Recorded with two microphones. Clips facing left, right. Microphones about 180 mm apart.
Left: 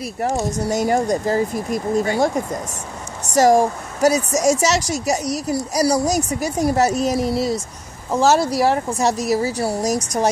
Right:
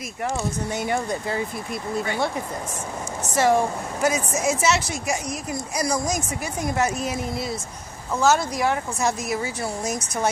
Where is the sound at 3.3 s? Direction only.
40° left (ahead or behind).